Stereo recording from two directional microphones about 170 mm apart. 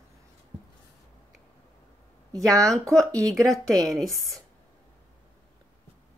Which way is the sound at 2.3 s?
20° right (ahead or behind).